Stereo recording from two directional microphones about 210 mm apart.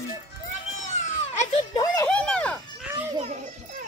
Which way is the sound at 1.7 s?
15° left (ahead or behind).